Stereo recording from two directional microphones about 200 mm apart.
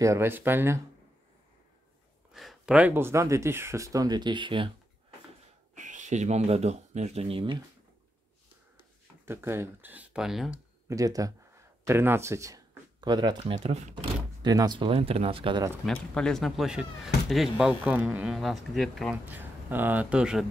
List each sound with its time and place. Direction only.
0.0 s speech: 15° right (ahead or behind)
2.3 s speech: centre (ahead or behind); by 4.6 s 25° right (ahead or behind)
5.8 s speech: 40° right (ahead or behind)
9.2 s speech: 10° right (ahead or behind)
10.9 s speech: 15° right (ahead or behind)
13.6 s speech: 35° right (ahead or behind)
14.4 s speech: 20° right (ahead or behind)
15.8 s speech: 5° left (ahead or behind)
19.3 s speech: 10° right (ahead or behind)